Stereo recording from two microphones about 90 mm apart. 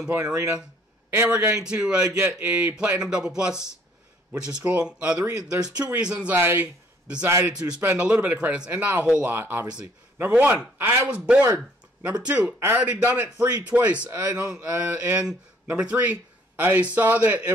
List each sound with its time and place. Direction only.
0.1 s speech: 15° right (ahead or behind)
1.1 s a man's voice: 25° right (ahead or behind)
1.5 s speech: 10° right (ahead or behind)
6.2 s a man's voice: 25° right (ahead or behind)
7.4 s a man's voice: 10° right (ahead or behind)